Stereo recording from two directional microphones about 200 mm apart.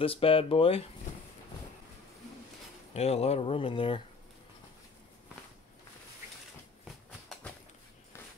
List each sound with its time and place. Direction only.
0.0 s speech: 25° left (ahead or behind)
2.9 s speech: 30° left (ahead or behind)
6.8 s a sound: centre (ahead or behind)